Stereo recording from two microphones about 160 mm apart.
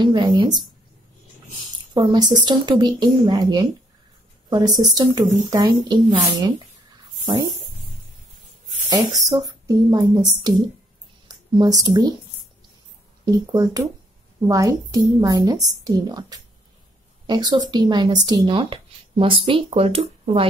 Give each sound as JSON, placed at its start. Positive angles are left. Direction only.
{"t": 0.0, "sound": "speech", "side_deg": -30}
{"t": 2.0, "sound": "speech", "side_deg": -25}
{"t": 9.3, "sound": "speech", "side_deg": -25}
{"t": 13.2, "sound": "speech", "side_deg": -25}